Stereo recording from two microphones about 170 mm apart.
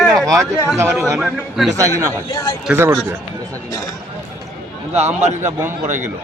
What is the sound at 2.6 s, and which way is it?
Speech, 15° right (ahead or behind).